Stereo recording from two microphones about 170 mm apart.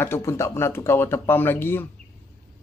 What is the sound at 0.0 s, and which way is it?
Speech, 15° left (ahead or behind).